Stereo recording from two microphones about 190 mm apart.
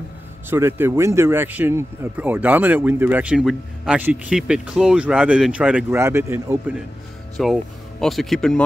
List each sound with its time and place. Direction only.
0.5 s speech: 10° right (ahead or behind)
7.4 s speech: centre (ahead or behind)